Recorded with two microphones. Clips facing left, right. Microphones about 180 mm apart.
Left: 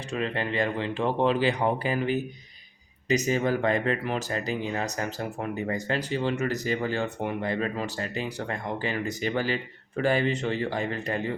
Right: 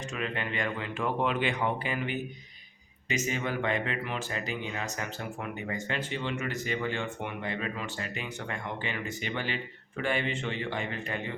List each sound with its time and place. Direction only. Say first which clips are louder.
0.1 s speech: left 7 dB; 35° left (ahead or behind)